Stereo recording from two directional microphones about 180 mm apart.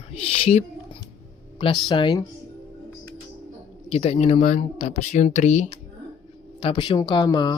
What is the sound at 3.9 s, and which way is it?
Speech, 35° left (ahead or behind).